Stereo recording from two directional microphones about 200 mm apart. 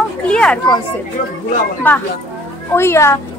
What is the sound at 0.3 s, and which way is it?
Speech, 5° left (ahead or behind).